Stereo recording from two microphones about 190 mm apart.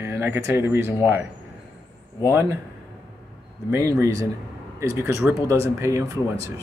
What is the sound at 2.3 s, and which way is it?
Speech, 10° right (ahead or behind).